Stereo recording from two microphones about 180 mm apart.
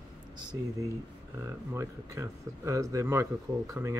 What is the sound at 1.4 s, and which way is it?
Speech, 15° right (ahead or behind).